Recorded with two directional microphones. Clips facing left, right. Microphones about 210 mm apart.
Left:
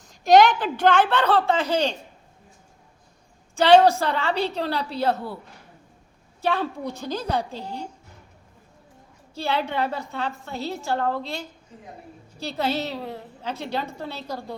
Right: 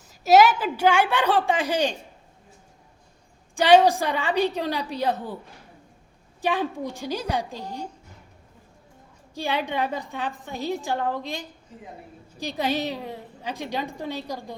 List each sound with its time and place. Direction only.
0.1 s a woman's voice: 5° right (ahead or behind)
3.5 s a woman's voice: 10° right (ahead or behind)
6.4 s a woman's voice: 15° right (ahead or behind)
9.3 s a woman's voice: 15° right (ahead or behind)